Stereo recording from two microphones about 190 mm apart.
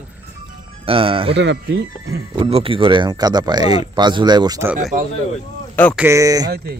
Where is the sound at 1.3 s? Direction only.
70° right (ahead or behind).